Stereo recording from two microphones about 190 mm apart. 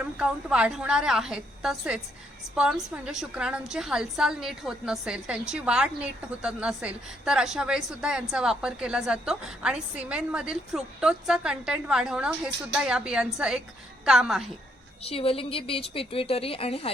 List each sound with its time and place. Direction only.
0.0 s a woman's voice: 5° right (ahead or behind)
15.0 s a woman's voice: 30° left (ahead or behind)